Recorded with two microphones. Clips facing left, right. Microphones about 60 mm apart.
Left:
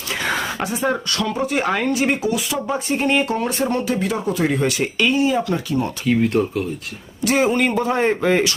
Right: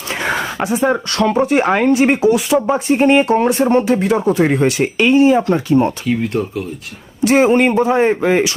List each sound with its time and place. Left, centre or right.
0.3 s a sound: centre
1.2 s speech: right
5.1 s speech: right
6.1 s speech: centre
7.3 s speech: right
7.9 s speech: centre